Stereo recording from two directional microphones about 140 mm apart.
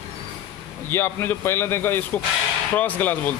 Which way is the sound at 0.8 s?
15° left (ahead or behind).